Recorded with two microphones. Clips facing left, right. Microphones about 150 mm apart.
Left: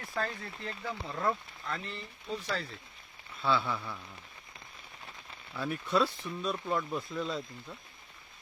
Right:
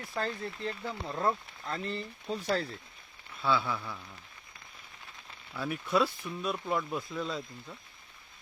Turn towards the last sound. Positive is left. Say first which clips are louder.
# even
turn(degrees=0)  # may be behind; listen again after turning